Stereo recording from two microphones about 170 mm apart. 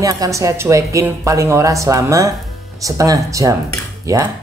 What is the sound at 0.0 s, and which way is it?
Speech, 20° right (ahead or behind).